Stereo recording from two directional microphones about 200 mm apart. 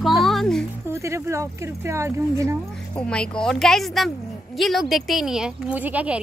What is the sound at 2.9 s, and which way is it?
Speech, 5° left (ahead or behind).